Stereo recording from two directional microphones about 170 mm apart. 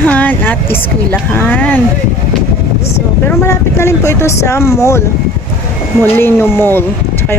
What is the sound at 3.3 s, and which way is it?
Speech, 15° left (ahead or behind).